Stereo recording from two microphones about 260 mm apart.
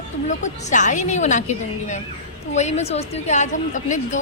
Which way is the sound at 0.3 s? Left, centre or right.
Left.